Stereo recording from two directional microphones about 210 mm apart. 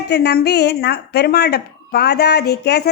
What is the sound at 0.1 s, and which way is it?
Speech, 50° left (ahead or behind).